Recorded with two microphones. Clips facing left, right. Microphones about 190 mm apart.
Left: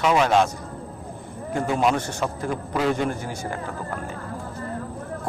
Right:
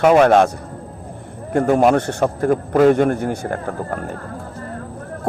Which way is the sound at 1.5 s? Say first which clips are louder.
Right 8 dB; 50° right (ahead or behind).